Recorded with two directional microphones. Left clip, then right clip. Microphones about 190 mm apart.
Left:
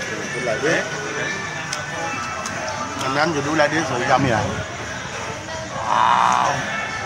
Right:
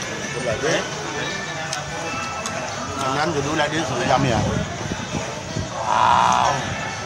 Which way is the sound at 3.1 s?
25° left (ahead or behind).